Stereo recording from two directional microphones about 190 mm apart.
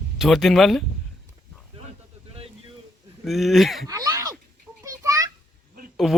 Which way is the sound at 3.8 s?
20° right (ahead or behind).